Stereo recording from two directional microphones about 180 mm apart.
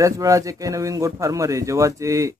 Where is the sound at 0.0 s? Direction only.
20° right (ahead or behind).